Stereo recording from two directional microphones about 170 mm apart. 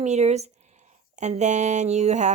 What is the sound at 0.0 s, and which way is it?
Speech, 40° right (ahead or behind).